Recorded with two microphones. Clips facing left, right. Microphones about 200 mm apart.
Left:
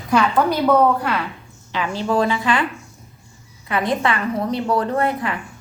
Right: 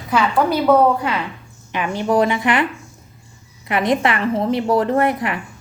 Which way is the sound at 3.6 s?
20° right (ahead or behind).